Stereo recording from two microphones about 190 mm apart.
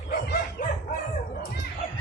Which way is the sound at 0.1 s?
55° left (ahead or behind).